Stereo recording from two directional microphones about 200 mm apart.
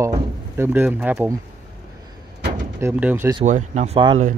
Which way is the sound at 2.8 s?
10° right (ahead or behind).